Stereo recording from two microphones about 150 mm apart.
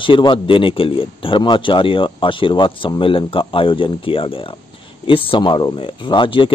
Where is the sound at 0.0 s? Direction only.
35° left (ahead or behind).